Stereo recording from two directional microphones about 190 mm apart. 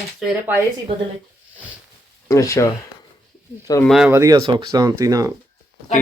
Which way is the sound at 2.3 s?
15° left (ahead or behind).